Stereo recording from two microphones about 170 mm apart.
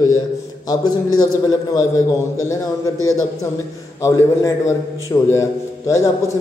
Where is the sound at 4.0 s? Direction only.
15° left (ahead or behind).